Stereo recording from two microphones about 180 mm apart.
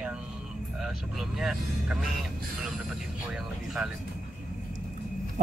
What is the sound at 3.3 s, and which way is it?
Speech, centre (ahead or behind).